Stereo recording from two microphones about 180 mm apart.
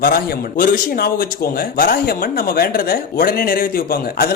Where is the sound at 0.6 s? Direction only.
55° left (ahead or behind).